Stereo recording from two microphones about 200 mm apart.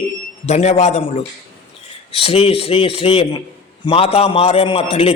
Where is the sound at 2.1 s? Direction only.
30° left (ahead or behind).